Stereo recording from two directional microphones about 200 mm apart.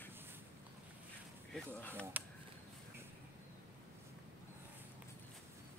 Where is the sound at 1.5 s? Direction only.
10° left (ahead or behind).